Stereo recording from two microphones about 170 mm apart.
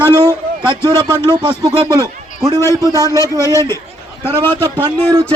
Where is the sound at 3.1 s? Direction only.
20° left (ahead or behind).